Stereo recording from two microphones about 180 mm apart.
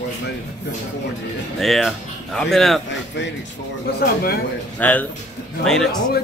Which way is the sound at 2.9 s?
85° left.